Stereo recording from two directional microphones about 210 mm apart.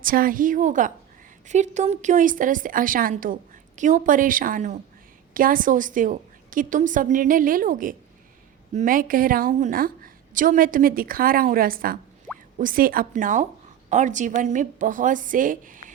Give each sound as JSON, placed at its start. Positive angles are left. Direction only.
{"t": 0.0, "sound": "a woman's voice", "side_deg": -40}